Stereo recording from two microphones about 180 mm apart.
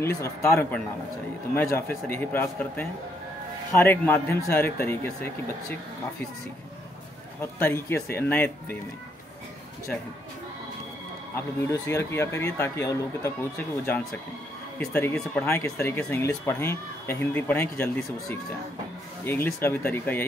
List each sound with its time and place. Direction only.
0.0 s speech: 15° left (ahead or behind)
7.6 s speech: 10° left (ahead or behind)
11.3 s speech: 15° left (ahead or behind)
14.8 s speech: 10° left (ahead or behind)
19.2 s speech: 10° left (ahead or behind)